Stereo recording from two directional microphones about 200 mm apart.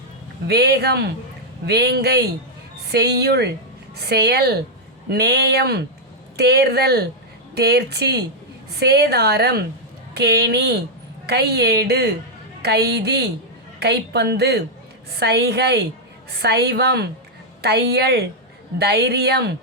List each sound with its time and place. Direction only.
0.4 s a woman's voice: 55° right (ahead or behind)